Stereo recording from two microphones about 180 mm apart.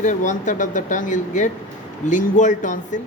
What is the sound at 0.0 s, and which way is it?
A woman's voice, 45° left (ahead or behind).